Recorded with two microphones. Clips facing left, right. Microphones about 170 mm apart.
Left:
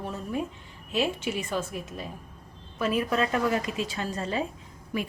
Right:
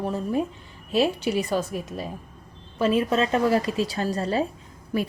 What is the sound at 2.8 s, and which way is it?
Speech, 25° right (ahead or behind).